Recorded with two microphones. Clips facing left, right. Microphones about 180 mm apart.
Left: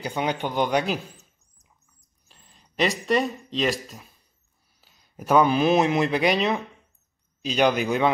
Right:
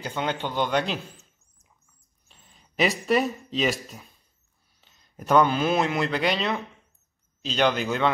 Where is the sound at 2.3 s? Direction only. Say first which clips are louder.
Even; centre (ahead or behind).